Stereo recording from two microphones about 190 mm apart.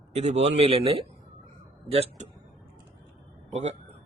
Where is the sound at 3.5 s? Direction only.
35° right (ahead or behind).